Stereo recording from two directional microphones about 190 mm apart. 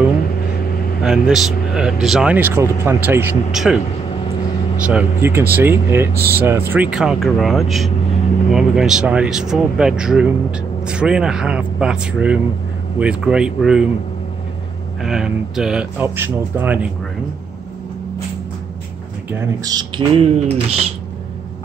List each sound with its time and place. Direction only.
1.0 s speech: centre (ahead or behind)
4.8 s speech: 10° right (ahead or behind)
15.0 s speech: 5° right (ahead or behind)
19.3 s speech: 15° right (ahead or behind); by 20.8 s 30° right (ahead or behind)